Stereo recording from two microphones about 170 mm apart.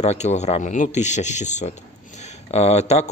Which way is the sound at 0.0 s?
40° left (ahead or behind).